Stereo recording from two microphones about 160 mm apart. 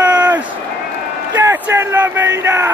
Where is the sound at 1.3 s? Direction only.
15° right (ahead or behind).